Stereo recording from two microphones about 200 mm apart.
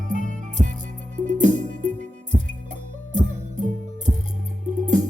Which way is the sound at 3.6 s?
35° right (ahead or behind).